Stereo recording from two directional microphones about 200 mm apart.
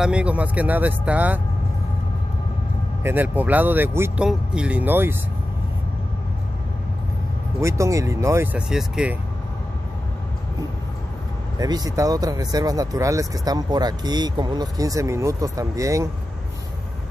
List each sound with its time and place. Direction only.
0.0 s speech: 5° right (ahead or behind)
3.0 s speech: 10° right (ahead or behind)
7.6 s speech: 15° right (ahead or behind)
11.5 s speech: 20° right (ahead or behind)